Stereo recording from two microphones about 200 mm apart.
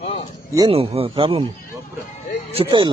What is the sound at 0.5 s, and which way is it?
Speech, 25° right (ahead or behind).